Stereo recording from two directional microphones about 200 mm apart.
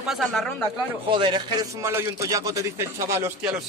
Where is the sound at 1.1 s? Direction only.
25° right (ahead or behind).